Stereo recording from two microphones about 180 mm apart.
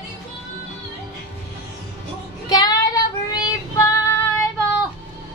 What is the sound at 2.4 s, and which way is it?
Child singing, 20° left (ahead or behind).